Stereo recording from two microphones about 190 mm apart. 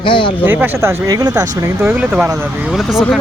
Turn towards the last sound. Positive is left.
turn(degrees=0)  # may be behind; listen again after turning